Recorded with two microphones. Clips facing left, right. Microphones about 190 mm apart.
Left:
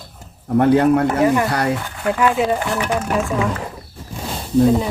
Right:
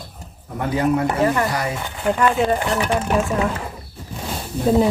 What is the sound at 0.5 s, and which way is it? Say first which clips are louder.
Speech: left 7 dB; 65° left (ahead or behind).